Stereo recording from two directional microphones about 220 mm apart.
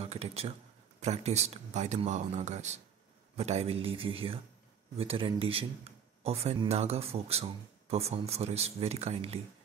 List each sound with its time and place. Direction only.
0.0 s speech: 30° right (ahead or behind)